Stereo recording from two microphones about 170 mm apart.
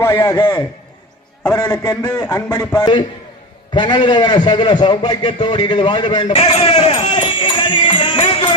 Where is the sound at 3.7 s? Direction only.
25° left (ahead or behind).